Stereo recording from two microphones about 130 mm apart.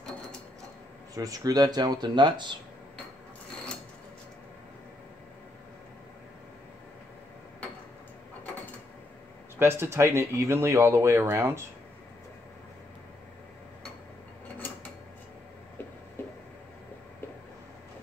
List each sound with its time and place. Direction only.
1.1 s speech: 25° right (ahead or behind)
9.6 s speech: 20° right (ahead or behind)
16.2 s a sound: 15° left (ahead or behind)